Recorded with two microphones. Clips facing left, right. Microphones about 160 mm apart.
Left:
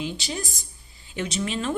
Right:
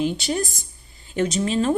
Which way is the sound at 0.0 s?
55° right (ahead or behind).